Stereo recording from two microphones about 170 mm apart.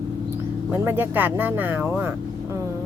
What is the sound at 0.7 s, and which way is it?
Speech, 10° right (ahead or behind).